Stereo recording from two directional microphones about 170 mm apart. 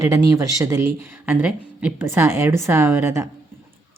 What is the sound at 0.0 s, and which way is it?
Speech, 20° right (ahead or behind).